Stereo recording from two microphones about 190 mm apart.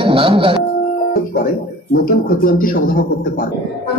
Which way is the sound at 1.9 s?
50° left (ahead or behind).